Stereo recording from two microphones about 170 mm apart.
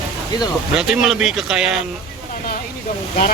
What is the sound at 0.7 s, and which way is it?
Speech, 5° right (ahead or behind).